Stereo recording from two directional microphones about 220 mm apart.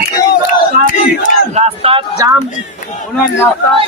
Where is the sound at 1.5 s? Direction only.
25° right (ahead or behind).